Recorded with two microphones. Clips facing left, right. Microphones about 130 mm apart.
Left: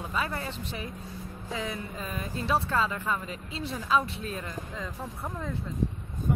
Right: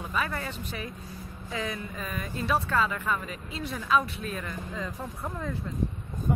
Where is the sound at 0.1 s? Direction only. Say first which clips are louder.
Right 1 dB; 25° left (ahead or behind).